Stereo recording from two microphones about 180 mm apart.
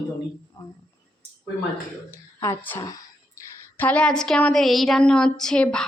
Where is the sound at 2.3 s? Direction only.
15° left (ahead or behind).